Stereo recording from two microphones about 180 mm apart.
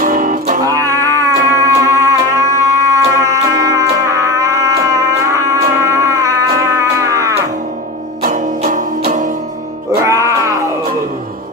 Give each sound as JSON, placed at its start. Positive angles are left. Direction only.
{"t": 0.0, "sound": "music", "side_deg": -50}
{"t": 0.7, "sound": "music", "side_deg": -20}
{"t": 8.2, "sound": "music", "side_deg": -50}
{"t": 10.0, "sound": "music", "side_deg": -15}